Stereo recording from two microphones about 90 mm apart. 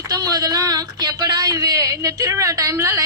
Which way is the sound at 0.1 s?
45° right (ahead or behind).